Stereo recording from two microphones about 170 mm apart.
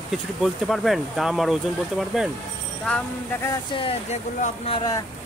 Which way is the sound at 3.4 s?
25° left (ahead or behind).